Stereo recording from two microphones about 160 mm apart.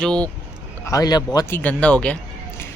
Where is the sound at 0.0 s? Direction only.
5° left (ahead or behind).